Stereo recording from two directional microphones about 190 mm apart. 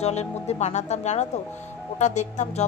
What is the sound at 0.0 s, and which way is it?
Speech, 35° left (ahead or behind).